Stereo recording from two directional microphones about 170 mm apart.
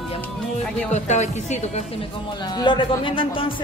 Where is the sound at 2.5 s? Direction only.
25° left (ahead or behind).